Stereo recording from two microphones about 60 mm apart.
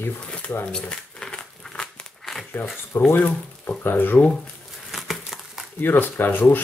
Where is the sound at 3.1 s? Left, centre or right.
Left.